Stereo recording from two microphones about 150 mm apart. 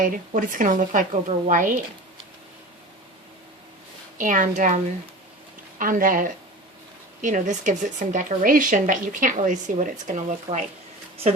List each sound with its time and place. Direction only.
0.0 s speech: 65° right (ahead or behind)
4.2 s speech: 60° right (ahead or behind)
5.8 s speech: 65° right (ahead or behind)